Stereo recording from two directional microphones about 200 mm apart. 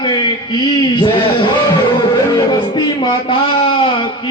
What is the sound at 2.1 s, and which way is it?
Music, 20° left (ahead or behind).